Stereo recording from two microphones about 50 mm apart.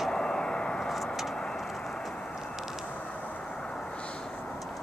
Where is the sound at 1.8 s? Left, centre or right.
Centre.